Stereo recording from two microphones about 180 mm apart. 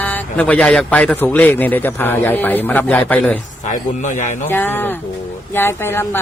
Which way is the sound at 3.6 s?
45° left (ahead or behind).